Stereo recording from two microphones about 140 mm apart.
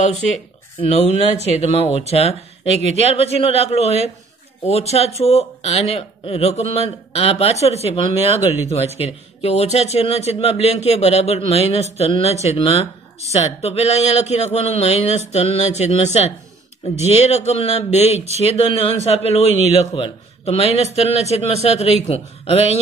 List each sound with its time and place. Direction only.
0.7 s a man's voice: 50° left (ahead or behind)